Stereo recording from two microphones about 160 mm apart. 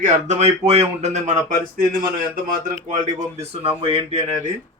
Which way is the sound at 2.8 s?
55° right (ahead or behind).